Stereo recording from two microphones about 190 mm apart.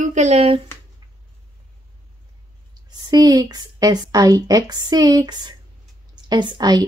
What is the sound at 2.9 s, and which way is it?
Speech, 20° right (ahead or behind).